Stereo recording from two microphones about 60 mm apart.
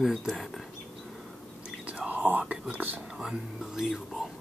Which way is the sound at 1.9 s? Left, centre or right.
Right.